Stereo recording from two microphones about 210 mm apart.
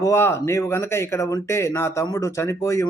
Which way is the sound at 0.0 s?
10° left (ahead or behind).